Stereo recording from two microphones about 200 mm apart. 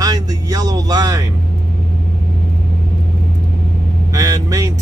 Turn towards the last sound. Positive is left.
turn(degrees=-15)  # may be behind; listen again after turning